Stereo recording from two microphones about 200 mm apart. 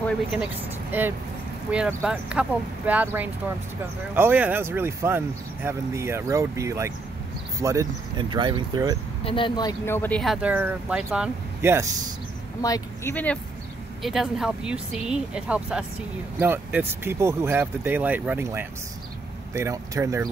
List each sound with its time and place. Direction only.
0.9 s speech: 10° right (ahead or behind)
9.2 s speech: 25° left (ahead or behind); by 11.9 s 15° right (ahead or behind)
12.6 s speech: 15° left (ahead or behind); by 20.2 s 15° right (ahead or behind)